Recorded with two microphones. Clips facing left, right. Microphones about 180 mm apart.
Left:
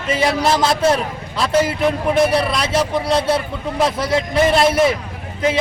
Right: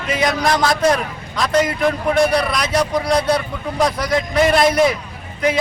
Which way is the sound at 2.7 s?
5° left (ahead or behind).